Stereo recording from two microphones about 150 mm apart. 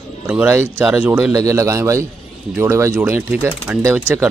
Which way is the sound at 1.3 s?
20° right (ahead or behind).